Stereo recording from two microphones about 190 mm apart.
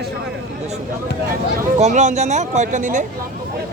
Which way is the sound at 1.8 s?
40° right (ahead or behind).